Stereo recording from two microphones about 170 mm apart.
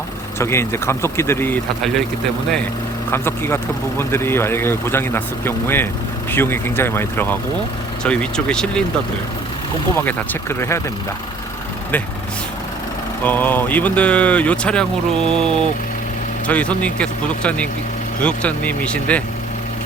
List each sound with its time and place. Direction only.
0.3 s speech: 15° left (ahead or behind)
3.1 s speech: 15° left (ahead or behind)
10.0 s speech: 10° left (ahead or behind)
13.2 s speech: 10° left (ahead or behind)